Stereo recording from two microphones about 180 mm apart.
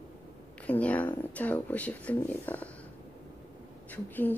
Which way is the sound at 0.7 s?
10° left (ahead or behind).